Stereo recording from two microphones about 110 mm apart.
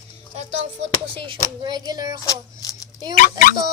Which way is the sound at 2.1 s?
35° left (ahead or behind).